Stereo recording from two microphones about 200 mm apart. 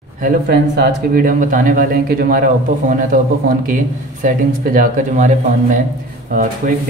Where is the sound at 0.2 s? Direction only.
50° right (ahead or behind).